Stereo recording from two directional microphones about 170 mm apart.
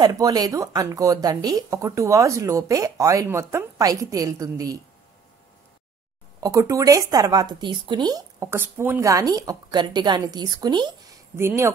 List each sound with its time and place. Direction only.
0.0 s speech: 20° right (ahead or behind)
6.4 s speech: 20° right (ahead or behind)
11.3 s speech: 15° right (ahead or behind)